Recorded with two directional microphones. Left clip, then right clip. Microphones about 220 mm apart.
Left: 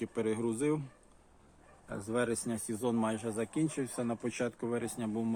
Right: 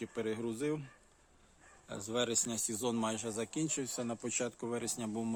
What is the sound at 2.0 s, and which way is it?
Speech, 20° right (ahead or behind).